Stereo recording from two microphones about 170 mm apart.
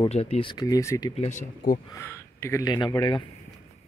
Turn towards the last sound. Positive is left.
turn(degrees=25)  # may be behind; listen again after turning